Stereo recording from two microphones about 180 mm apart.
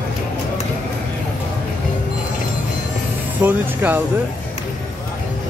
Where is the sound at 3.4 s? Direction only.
10° right (ahead or behind).